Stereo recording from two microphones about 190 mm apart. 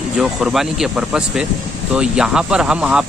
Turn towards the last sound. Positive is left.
turn(degrees=-5)  # may be behind; listen again after turning